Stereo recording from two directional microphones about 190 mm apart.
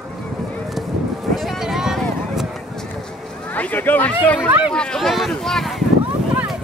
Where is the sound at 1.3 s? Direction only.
Centre (ahead or behind).